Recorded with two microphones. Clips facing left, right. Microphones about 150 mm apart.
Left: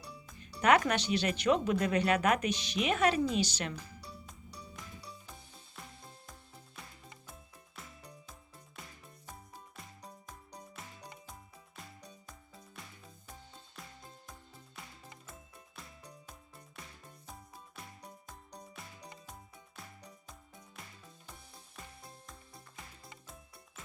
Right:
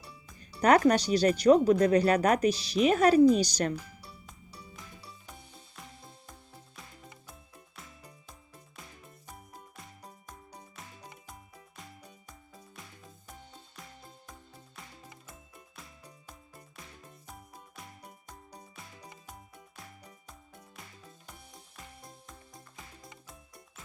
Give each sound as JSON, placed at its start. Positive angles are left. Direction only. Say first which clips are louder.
{"t": 0.3, "sound": "speech", "louder": "right 4 dB", "side_deg": -35}
{"t": 4.3, "sound": "music", "louder": "even", "side_deg": 0}
{"t": 7.8, "sound": "music", "louder": "left 2 dB", "side_deg": 0}
{"t": 15.7, "sound": "music", "louder": "left 2 dB", "side_deg": 0}
{"t": 18.5, "sound": "music", "louder": "even", "side_deg": -5}
{"t": 23.2, "sound": "music", "louder": "right 1 dB", "side_deg": 0}